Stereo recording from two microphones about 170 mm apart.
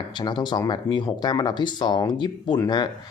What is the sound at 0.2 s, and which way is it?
Speech, 25° left (ahead or behind).